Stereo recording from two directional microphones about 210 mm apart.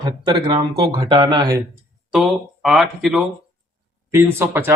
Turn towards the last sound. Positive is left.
turn(degrees=-10)  # may be behind; listen again after turning